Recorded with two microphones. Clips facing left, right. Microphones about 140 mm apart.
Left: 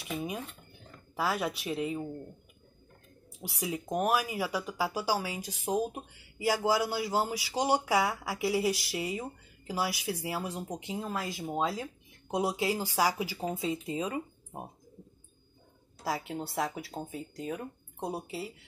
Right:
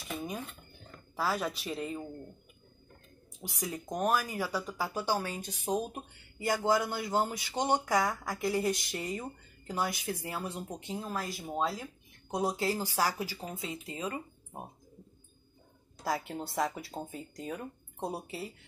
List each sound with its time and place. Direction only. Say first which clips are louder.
0.0 s speech: left 2 dB; 5° left (ahead or behind)
3.3 s speech: left 3 dB; 10° left (ahead or behind)
10.9 s speech: left 1 dB; 15° left (ahead or behind)
16.0 s speech: even; centre (ahead or behind)